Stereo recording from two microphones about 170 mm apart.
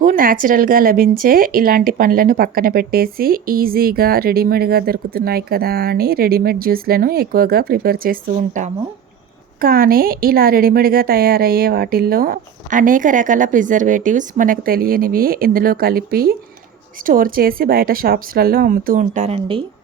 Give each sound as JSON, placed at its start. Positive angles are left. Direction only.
{"t": 0.0, "sound": "a woman's voice", "side_deg": -55}